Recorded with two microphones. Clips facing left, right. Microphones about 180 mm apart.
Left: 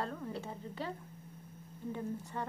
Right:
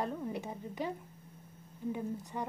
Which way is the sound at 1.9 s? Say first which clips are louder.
Right 1 dB; 15° right (ahead or behind).